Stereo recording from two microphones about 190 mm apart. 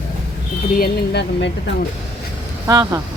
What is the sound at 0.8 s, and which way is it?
Speech, 60° left (ahead or behind).